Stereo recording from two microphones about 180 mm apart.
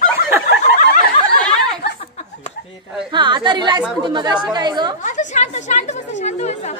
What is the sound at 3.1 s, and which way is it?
Speech, 25° right (ahead or behind).